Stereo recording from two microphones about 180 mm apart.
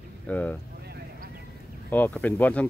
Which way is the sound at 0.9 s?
55° right (ahead or behind).